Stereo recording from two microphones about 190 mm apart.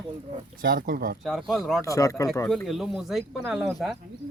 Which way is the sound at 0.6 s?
50° right (ahead or behind).